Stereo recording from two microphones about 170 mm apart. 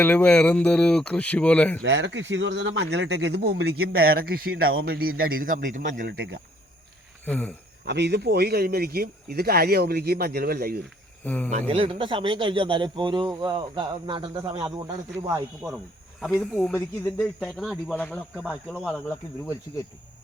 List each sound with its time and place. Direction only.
0.0 s speech: 10° left (ahead or behind)
1.8 s a man's voice: 90° right; by 6.1 s 50° right (ahead or behind)
6.1 s speech: 75° right (ahead or behind)
7.3 s speech: 10° left (ahead or behind)
7.9 s a man's voice: 80° right; by 10.8 s 65° right (ahead or behind)
11.2 s speech: 10° left (ahead or behind)
11.7 s speech: 30° right (ahead or behind)
16.4 s speech: 5° left (ahead or behind)